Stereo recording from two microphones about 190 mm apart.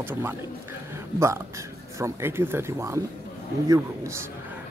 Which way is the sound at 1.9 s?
15° right (ahead or behind).